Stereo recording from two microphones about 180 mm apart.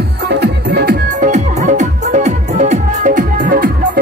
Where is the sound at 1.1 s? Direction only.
45° right (ahead or behind).